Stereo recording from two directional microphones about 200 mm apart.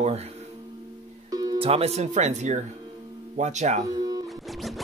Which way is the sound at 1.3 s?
20° right (ahead or behind).